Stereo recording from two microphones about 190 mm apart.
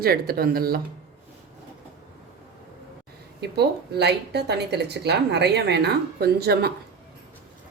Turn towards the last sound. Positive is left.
turn(degrees=-55)  # may be behind; listen again after turning